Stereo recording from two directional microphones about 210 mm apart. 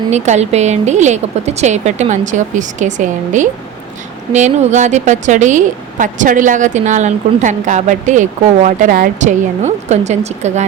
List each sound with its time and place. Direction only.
0.1 s a woman's voice: 30° right (ahead or behind)